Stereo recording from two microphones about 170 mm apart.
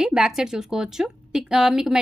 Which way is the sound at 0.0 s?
5° right (ahead or behind).